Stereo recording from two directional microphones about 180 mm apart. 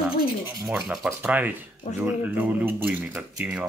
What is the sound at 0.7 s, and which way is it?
Speech, 5° right (ahead or behind).